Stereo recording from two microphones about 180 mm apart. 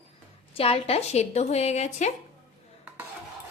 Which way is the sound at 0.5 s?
35° left (ahead or behind).